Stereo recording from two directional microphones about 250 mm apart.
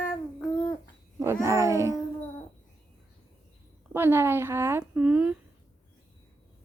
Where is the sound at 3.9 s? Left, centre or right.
Centre.